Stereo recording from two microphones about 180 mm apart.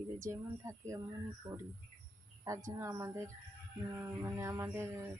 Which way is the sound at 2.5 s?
15° right (ahead or behind).